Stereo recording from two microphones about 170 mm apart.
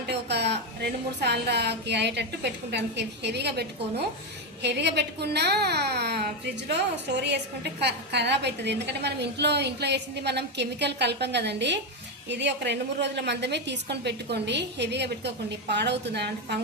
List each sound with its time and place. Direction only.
0.1 s a woman's voice: 85° right
6.7 s a woman's voice: 90° right